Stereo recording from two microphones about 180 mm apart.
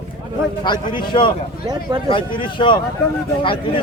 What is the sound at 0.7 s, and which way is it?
Speech, 25° left (ahead or behind).